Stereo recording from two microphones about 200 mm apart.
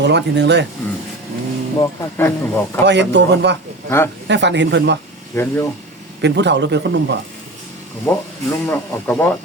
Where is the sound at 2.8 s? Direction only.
60° right (ahead or behind).